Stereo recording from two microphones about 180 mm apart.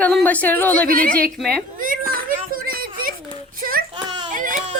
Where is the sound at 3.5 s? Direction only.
55° right (ahead or behind).